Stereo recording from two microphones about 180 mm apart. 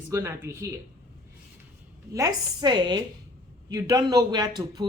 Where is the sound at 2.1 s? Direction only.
20° right (ahead or behind).